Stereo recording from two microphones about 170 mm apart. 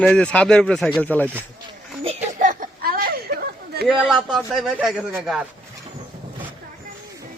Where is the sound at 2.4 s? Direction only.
50° right (ahead or behind).